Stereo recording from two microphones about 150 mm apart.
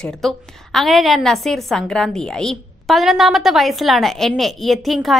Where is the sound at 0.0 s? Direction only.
5° left (ahead or behind).